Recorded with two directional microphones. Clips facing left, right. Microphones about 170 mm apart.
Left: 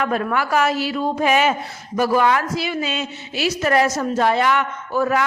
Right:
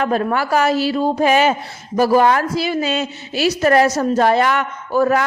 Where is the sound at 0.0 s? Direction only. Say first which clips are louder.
Right 3 dB; 35° right (ahead or behind).